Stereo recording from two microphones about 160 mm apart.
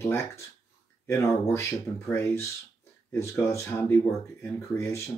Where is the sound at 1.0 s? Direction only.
15° left (ahead or behind).